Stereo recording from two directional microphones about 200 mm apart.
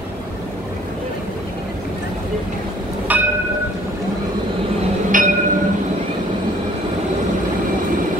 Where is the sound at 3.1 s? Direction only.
10° right (ahead or behind).